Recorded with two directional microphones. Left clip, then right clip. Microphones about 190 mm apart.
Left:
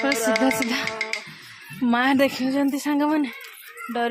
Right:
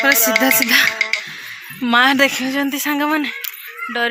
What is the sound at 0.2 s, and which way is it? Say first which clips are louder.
Music: right 6 dB; 35° left (ahead or behind).